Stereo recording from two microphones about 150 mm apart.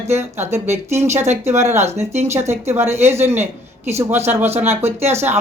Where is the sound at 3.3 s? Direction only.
45° right (ahead or behind).